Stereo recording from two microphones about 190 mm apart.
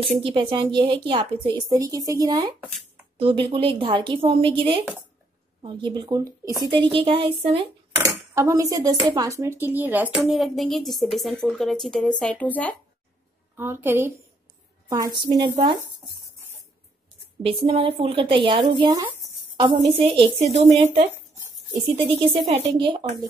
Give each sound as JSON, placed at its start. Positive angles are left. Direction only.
{"t": 0.2, "sound": "speech", "side_deg": -30}
{"t": 8.0, "sound": "speech", "side_deg": -15}
{"t": 13.6, "sound": "a woman's voice", "side_deg": -10}
{"t": 17.5, "sound": "speech", "side_deg": -30}
{"t": 22.3, "sound": "speech", "side_deg": -25}